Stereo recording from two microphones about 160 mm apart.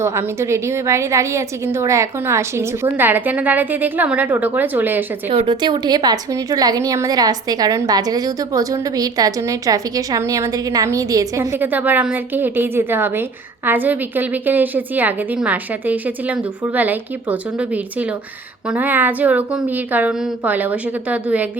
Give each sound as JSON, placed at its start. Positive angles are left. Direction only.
{"t": 0.0, "sound": "a woman's voice", "side_deg": -15}
{"t": 5.3, "sound": "a woman's voice", "side_deg": -35}
{"t": 18.7, "sound": "a woman's voice", "side_deg": -10}